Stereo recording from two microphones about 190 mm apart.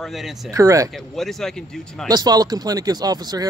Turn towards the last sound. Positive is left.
turn(degrees=-20)  # may be behind; listen again after turning